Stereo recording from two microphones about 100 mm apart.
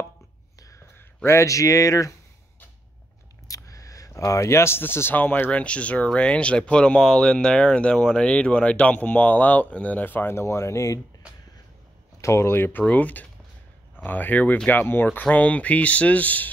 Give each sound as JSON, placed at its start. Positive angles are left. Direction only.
{"t": 0.9, "sound": "speech", "side_deg": 25}
{"t": 3.4, "sound": "speech", "side_deg": 35}
{"t": 12.2, "sound": "speech", "side_deg": 30}